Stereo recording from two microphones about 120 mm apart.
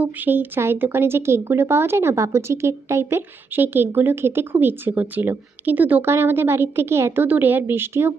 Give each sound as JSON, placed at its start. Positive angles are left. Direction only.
{"t": 0.0, "sound": "speech", "side_deg": -15}